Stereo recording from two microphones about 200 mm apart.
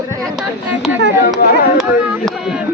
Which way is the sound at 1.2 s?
50° left (ahead or behind).